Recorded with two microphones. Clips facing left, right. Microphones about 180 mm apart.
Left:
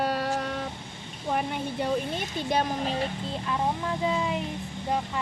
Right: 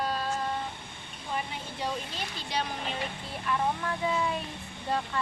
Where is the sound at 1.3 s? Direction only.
60° left (ahead or behind); by 3.1 s 35° left (ahead or behind).